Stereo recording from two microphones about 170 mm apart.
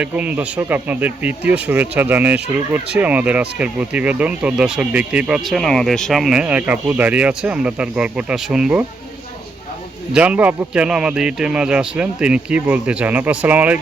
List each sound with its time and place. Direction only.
0.0 s speech: 10° right (ahead or behind)
10.1 s speech: 5° right (ahead or behind)